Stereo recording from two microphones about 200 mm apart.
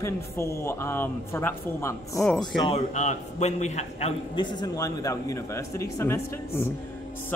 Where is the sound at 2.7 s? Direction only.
35° left (ahead or behind).